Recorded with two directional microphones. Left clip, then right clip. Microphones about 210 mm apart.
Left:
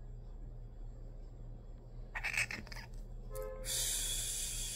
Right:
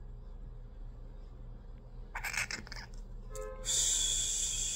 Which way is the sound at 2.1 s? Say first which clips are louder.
Even; 25° right (ahead or behind).